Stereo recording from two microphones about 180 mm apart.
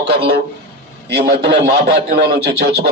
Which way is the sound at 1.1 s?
70° right (ahead or behind).